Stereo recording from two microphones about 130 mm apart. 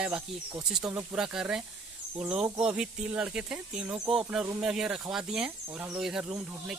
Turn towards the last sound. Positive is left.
turn(degrees=-5)  # may be behind; listen again after turning